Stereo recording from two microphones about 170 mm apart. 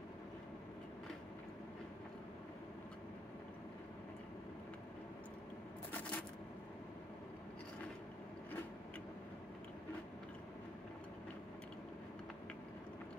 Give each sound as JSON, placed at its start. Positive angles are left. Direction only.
{"t": 5.9, "sound": "coin", "side_deg": 10}